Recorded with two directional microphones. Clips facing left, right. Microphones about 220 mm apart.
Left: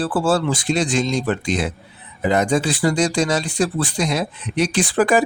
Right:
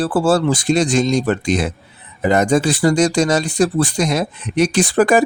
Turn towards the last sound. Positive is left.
turn(degrees=-45)  # may be behind; listen again after turning